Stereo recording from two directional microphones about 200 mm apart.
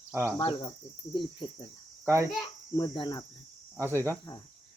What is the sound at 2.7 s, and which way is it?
Cricket, 20° left (ahead or behind).